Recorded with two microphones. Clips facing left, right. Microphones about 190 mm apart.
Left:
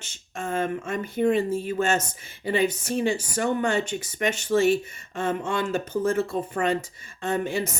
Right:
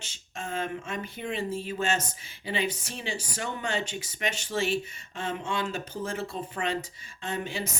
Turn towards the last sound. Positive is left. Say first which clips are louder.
# left 7 dB
turn(degrees=50)  # may be behind; listen again after turning